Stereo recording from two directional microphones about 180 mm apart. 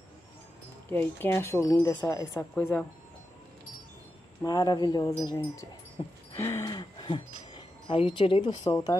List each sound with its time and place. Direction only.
0.8 s speech: 10° left (ahead or behind)
4.4 s speech: 20° left (ahead or behind)